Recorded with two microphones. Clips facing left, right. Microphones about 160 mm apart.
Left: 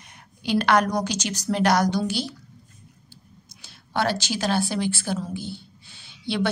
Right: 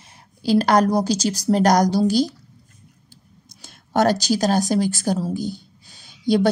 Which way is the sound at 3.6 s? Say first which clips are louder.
Right 7 dB; 45° right (ahead or behind).